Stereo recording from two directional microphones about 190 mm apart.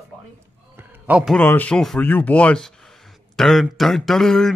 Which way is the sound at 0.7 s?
10° right (ahead or behind).